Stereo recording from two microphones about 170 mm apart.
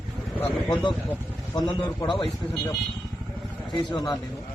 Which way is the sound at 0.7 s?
25° left (ahead or behind).